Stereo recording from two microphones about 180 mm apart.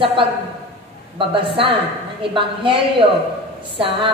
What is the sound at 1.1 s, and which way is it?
A man's voice, 30° right (ahead or behind).